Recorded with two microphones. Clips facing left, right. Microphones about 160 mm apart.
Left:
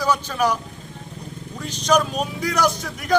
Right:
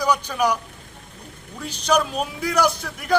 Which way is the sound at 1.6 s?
10° right (ahead or behind).